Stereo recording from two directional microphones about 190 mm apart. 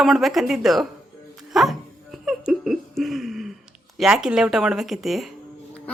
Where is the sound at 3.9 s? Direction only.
Centre (ahead or behind).